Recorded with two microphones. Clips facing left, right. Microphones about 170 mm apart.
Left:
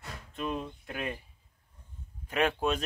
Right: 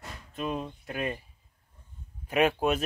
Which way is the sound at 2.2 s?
10° right (ahead or behind).